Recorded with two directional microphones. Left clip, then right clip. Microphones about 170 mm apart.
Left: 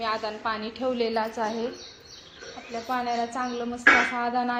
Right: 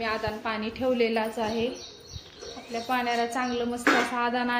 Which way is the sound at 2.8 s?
Centre (ahead or behind).